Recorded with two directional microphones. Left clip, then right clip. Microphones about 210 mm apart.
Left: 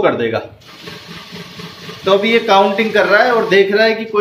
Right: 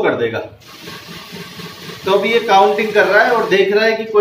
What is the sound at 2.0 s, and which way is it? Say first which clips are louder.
A man's voice: left 2 dB; 45° left (ahead or behind).